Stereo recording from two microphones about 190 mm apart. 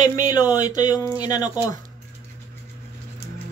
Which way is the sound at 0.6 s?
40° right (ahead or behind).